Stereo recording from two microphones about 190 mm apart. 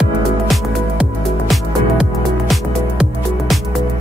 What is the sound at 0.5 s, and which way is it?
Music, centre (ahead or behind).